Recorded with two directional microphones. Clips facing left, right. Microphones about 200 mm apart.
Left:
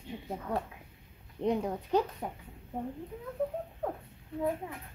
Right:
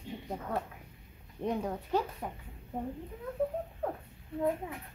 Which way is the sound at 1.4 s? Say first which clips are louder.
Left 3 dB; 15° left (ahead or behind).